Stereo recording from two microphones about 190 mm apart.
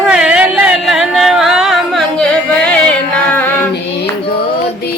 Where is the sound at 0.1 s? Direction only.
5° right (ahead or behind).